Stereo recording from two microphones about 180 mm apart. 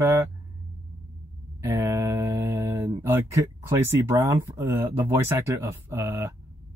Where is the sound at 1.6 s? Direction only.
15° right (ahead or behind).